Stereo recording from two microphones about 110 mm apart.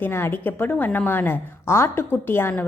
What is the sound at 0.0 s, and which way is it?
A woman's voice, 20° left (ahead or behind).